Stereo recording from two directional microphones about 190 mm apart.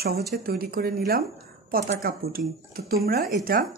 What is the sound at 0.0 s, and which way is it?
Speech, 55° right (ahead or behind).